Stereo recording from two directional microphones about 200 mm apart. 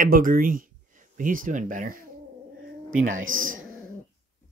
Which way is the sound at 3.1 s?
80° right.